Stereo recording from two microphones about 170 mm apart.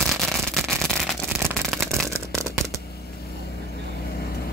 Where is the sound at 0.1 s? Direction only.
Centre (ahead or behind).